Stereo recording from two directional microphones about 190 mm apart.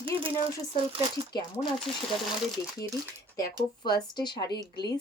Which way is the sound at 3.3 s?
20° left (ahead or behind).